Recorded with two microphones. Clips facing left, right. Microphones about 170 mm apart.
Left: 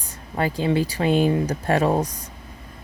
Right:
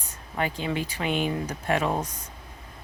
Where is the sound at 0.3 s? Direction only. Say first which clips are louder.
Left 7 dB; 35° left (ahead or behind).